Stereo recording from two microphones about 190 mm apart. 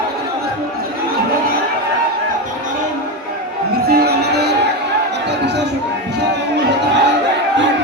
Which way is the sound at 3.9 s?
55° right (ahead or behind).